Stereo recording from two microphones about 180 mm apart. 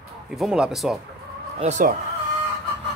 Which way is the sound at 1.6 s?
40° right (ahead or behind).